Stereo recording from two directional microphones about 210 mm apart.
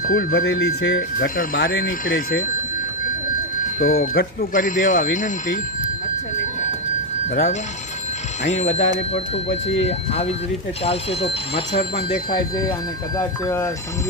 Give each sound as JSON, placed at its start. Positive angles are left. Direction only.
{"t": 0.1, "sound": "speech", "side_deg": 45}
{"t": 3.8, "sound": "speech", "side_deg": 40}
{"t": 7.3, "sound": "speech", "side_deg": 40}
{"t": 10.8, "sound": "speech", "side_deg": 30}
{"t": 13.1, "sound": "speech", "side_deg": 15}